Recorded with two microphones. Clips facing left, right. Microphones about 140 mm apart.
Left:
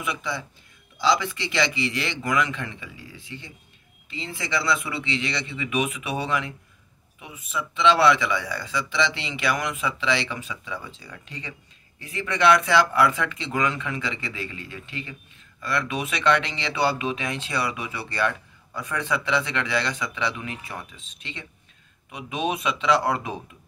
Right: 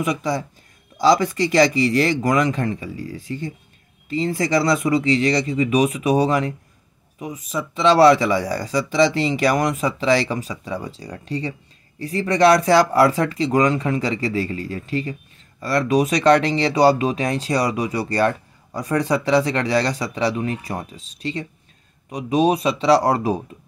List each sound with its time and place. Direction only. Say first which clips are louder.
0.0 s speech: right 8 dB; 40° right (ahead or behind)